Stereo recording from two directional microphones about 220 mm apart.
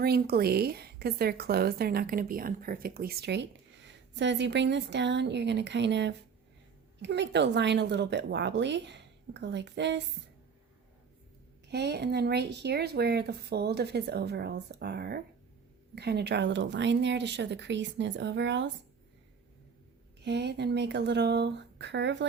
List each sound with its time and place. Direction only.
0.0 s speech: 45° right (ahead or behind)
11.7 s speech: 50° right (ahead or behind)
20.2 s speech: 50° right (ahead or behind)